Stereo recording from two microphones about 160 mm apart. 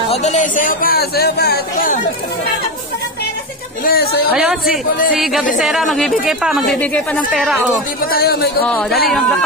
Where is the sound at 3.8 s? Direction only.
70° left (ahead or behind).